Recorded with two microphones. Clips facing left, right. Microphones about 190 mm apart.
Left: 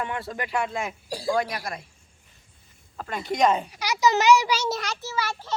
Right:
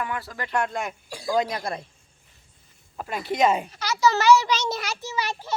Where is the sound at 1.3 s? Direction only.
20° right (ahead or behind).